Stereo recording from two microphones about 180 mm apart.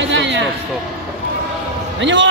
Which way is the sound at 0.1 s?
80° right.